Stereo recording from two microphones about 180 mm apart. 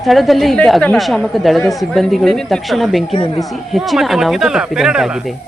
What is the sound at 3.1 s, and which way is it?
Speech, 30° left (ahead or behind).